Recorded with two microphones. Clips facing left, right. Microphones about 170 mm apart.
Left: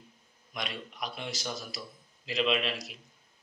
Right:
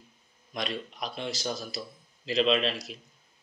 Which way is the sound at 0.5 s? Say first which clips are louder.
Right 5 dB; 30° right (ahead or behind).